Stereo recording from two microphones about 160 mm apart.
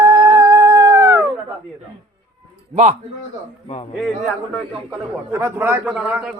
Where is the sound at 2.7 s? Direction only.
50° right (ahead or behind).